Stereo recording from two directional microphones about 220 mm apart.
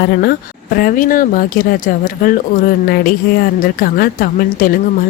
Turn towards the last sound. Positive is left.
turn(degrees=40)  # may be behind; listen again after turning